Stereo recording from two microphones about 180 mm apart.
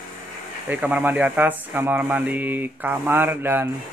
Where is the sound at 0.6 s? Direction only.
10° right (ahead or behind).